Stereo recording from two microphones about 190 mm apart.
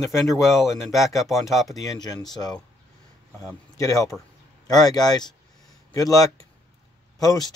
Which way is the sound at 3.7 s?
15° left (ahead or behind).